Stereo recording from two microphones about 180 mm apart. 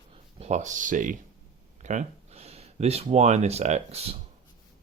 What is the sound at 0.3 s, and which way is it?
Speech, 40° right (ahead or behind).